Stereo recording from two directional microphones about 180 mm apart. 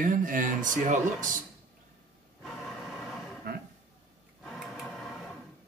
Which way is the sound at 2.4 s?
Centre (ahead or behind).